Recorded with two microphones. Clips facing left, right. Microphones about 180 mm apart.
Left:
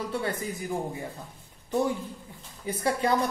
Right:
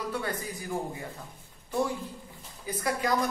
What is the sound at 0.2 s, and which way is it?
Speech, 25° left (ahead or behind).